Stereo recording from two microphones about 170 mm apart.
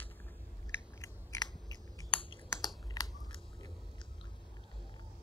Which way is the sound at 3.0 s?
20° left (ahead or behind).